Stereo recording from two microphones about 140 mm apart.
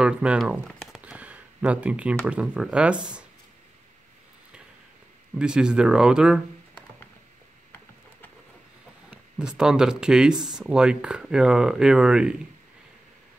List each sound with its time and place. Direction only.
0.0 s a sound: 5° right (ahead or behind)
2.2 s speech: 5° right (ahead or behind)
5.3 s speech: 5° right (ahead or behind)
9.1 s speech: 5° right (ahead or behind)